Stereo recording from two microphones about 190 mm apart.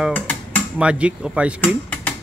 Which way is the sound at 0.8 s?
5° right (ahead or behind).